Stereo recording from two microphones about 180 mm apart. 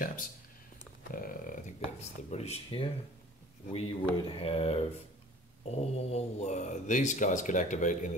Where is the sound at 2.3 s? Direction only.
35° left (ahead or behind).